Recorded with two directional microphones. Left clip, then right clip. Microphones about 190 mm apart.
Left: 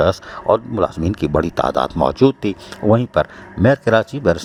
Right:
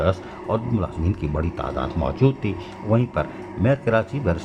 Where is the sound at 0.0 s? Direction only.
50° left (ahead or behind).